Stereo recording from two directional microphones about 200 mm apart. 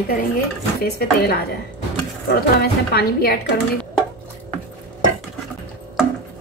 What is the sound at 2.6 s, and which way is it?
Speech, 50° left (ahead or behind).